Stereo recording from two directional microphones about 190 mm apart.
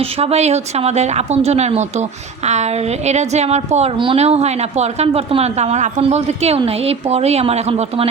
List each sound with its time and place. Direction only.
0.0 s a woman's voice: 35° right (ahead or behind)